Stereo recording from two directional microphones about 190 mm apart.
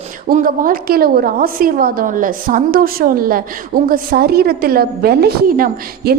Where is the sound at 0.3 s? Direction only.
50° right (ahead or behind).